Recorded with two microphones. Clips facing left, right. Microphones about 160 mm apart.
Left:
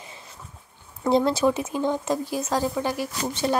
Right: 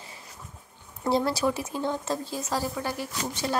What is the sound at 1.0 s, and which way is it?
A woman's voice, 20° left (ahead or behind).